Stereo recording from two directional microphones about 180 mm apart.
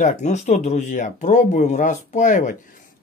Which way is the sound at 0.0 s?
40° left (ahead or behind).